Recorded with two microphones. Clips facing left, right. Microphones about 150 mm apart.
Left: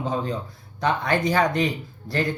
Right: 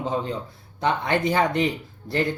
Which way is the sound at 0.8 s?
25° right (ahead or behind).